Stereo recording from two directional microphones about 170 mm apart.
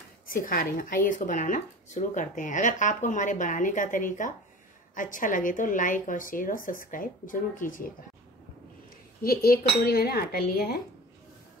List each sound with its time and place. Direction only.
0.3 s speech: 55° left (ahead or behind)
9.2 s speech: 60° left (ahead or behind)